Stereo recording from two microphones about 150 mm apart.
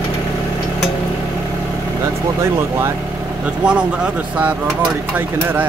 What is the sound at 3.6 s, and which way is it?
Speech, 5° right (ahead or behind).